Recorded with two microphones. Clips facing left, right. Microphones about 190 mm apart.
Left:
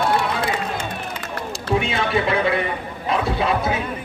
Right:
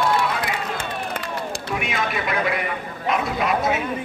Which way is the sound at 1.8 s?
30° left (ahead or behind).